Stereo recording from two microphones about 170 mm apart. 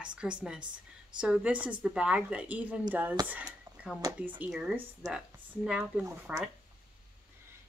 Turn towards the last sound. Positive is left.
turn(degrees=-15)  # may be behind; listen again after turning